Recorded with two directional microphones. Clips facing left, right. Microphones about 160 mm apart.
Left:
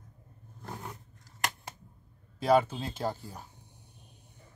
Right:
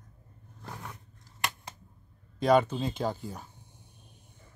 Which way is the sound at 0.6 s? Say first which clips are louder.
Left 1 dB; 25° left (ahead or behind).